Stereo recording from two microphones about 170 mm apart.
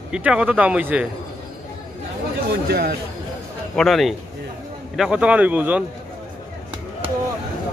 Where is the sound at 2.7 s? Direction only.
70° right (ahead or behind).